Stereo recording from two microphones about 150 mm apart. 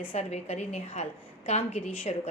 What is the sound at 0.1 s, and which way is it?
A woman's voice, 45° left (ahead or behind).